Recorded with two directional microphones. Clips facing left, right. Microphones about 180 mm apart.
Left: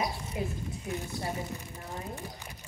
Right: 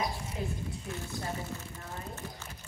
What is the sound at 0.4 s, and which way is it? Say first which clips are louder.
Speech: left 3 dB; 10° left (ahead or behind).